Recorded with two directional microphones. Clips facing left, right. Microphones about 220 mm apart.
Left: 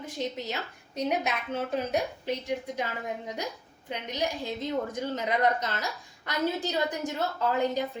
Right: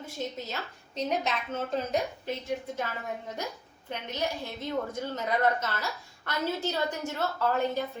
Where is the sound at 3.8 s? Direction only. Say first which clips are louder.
Left 1 dB; 15° left (ahead or behind).